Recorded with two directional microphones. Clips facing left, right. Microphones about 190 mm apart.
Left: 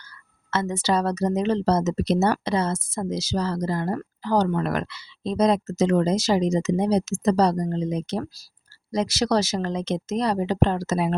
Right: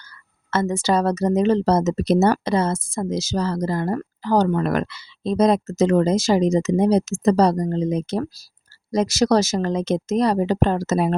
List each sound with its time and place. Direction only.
0.5 s speech: 45° right (ahead or behind)